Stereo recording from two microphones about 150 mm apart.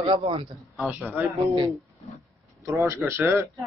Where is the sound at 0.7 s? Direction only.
5° right (ahead or behind).